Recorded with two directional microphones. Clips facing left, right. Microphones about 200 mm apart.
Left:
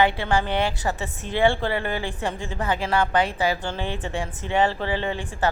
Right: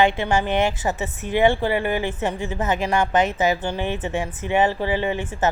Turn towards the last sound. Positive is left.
turn(degrees=-20)  # may be behind; listen again after turning